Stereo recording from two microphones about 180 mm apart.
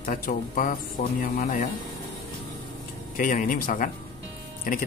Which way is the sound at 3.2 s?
50° left (ahead or behind).